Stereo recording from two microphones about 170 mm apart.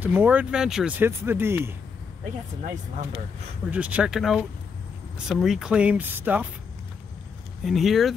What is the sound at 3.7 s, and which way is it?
Speech, 5° right (ahead or behind).